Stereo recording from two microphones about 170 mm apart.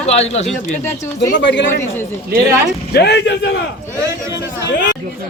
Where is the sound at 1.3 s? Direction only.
90° left.